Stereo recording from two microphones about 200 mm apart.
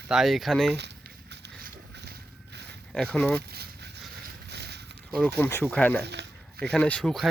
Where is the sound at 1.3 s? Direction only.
55° right (ahead or behind).